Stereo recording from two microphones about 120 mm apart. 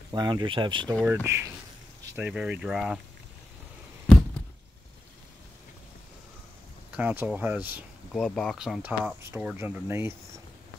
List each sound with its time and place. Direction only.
0.1 s speech: 35° right (ahead or behind)
1.2 s speech: 20° right (ahead or behind)
2.1 s speech: 10° right (ahead or behind)
6.9 s speech: 15° right (ahead or behind)
8.1 s speech: 5° left (ahead or behind)
9.0 s speech: 20° right (ahead or behind)